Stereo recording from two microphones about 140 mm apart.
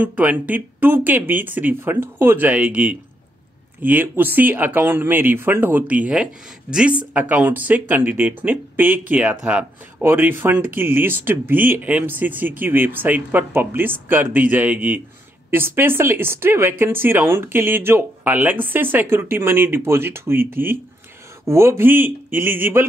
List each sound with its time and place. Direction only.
0.0 s speech: 10° right (ahead or behind)
21.5 s speech: 20° right (ahead or behind)